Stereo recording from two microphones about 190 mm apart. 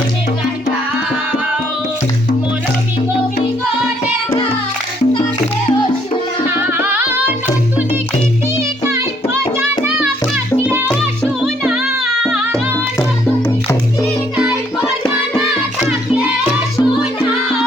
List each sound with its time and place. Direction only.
6.7 s music: 10° right (ahead or behind)
8.9 s music: 15° right (ahead or behind)
14.0 s music: 5° right (ahead or behind)